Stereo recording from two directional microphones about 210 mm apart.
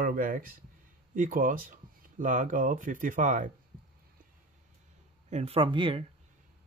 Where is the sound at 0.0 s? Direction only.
40° right (ahead or behind).